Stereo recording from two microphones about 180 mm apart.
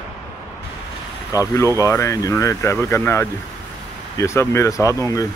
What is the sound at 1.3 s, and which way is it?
Speech, 15° left (ahead or behind).